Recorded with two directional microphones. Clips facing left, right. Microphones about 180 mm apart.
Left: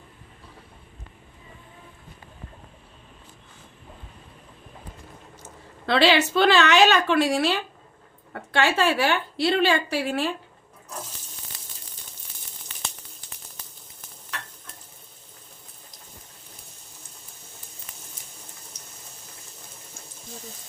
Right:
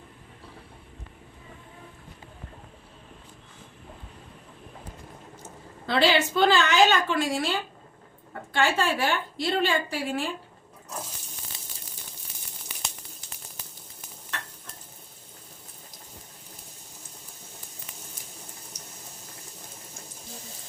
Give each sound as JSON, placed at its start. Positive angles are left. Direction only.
{"t": 5.8, "sound": "a woman's voice", "side_deg": 75}